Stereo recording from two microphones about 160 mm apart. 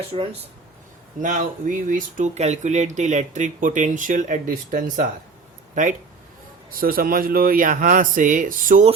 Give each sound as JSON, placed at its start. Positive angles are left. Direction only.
{"t": 0.1, "sound": "speech", "side_deg": -35}
{"t": 1.2, "sound": "speech", "side_deg": -50}
{"t": 6.7, "sound": "speech", "side_deg": -65}